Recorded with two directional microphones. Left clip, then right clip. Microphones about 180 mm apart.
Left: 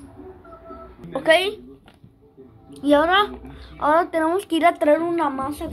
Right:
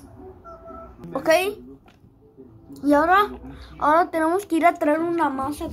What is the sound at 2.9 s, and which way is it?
Speech, 5° left (ahead or behind).